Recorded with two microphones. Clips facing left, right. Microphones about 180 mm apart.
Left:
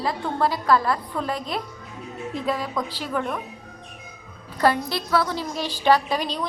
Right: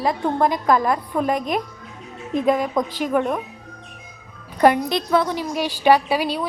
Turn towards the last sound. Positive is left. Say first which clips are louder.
# right 4 dB
turn(degrees=-10)  # may be behind; listen again after turning